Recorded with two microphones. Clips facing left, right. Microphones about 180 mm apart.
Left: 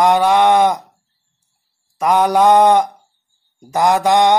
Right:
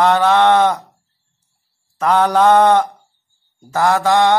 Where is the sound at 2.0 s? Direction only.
10° left (ahead or behind).